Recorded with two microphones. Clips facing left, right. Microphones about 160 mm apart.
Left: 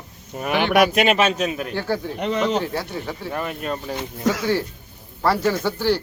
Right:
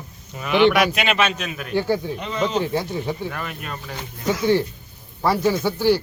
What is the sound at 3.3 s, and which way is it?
Speech, 25° left (ahead or behind).